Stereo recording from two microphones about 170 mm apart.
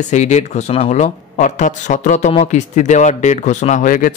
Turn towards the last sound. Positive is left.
turn(degrees=55)  # may be behind; listen again after turning